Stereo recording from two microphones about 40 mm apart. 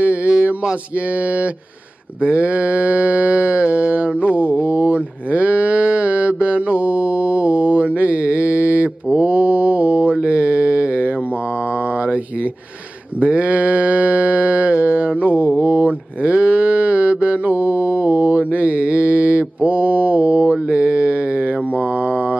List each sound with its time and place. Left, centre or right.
0.0 s a sound: right
2.2 s mantra: right
4.6 s cattle: right
10.2 s mantra: right
13.2 s mantra: right
15.6 s moo: right